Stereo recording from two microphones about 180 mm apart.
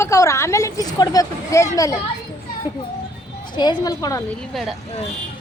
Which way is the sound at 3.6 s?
20° left (ahead or behind).